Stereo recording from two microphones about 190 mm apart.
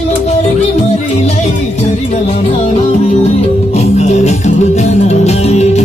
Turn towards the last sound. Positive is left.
turn(degrees=35)  # may be behind; listen again after turning